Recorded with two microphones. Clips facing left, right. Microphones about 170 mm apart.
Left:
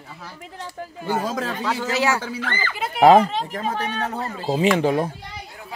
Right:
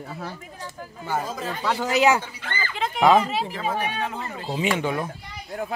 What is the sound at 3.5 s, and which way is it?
A man's voice, 40° left (ahead or behind).